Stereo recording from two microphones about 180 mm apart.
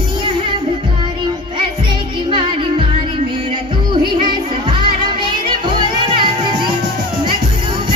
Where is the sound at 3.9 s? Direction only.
25° right (ahead or behind).